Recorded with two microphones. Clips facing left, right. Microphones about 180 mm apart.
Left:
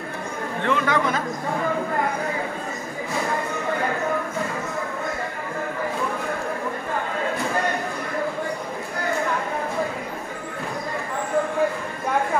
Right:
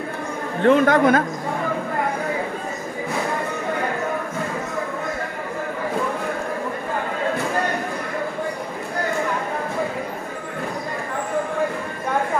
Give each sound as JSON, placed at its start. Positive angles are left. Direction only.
{"t": 0.7, "sound": "speech", "side_deg": -45}